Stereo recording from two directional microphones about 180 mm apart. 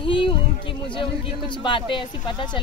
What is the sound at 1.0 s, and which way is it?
Speech, 25° left (ahead or behind).